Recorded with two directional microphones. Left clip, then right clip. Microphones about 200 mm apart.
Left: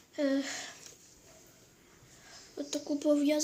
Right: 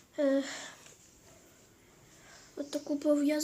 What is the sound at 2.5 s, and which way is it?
Speech, 20° right (ahead or behind).